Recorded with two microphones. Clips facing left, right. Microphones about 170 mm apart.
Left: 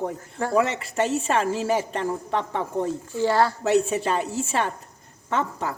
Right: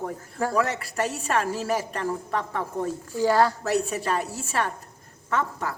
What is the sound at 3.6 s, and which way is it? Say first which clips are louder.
A woman's voice: left 4 dB; 25° left (ahead or behind).